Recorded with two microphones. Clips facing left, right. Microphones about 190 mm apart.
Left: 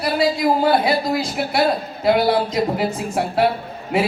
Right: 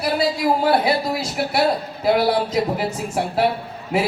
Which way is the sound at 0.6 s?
5° right (ahead or behind).